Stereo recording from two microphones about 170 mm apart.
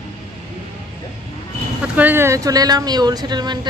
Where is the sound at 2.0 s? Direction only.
10° right (ahead or behind).